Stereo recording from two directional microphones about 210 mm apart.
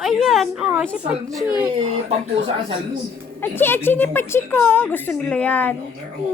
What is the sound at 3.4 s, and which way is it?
A child's voice, 10° left (ahead or behind).